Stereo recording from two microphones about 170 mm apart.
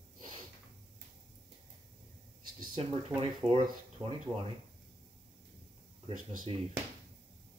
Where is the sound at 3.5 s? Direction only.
35° right (ahead or behind).